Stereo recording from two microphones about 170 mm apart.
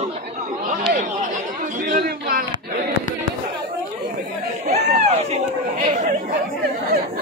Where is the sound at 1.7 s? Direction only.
55° right (ahead or behind).